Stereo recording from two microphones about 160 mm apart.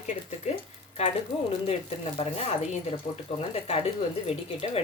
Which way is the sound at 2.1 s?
40° left (ahead or behind).